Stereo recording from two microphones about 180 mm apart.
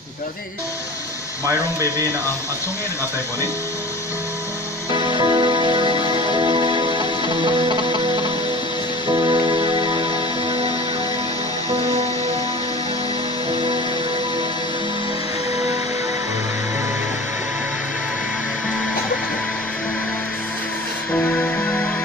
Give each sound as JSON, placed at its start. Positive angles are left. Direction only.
{"t": 1.4, "sound": "speech", "side_deg": -15}
{"t": 4.9, "sound": "music", "side_deg": -30}
{"t": 11.7, "sound": "music", "side_deg": -35}
{"t": 21.1, "sound": "music", "side_deg": 5}